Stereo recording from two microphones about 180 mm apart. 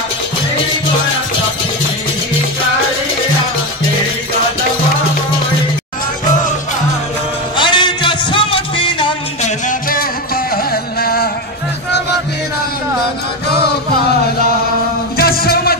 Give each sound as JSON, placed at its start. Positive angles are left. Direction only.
{"t": 7.5, "sound": "music", "side_deg": 25}
{"t": 9.4, "sound": "music", "side_deg": 50}
{"t": 15.1, "sound": "music", "side_deg": 55}